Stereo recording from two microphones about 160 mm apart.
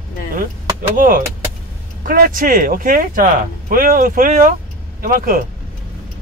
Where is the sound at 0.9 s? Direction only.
60° right (ahead or behind).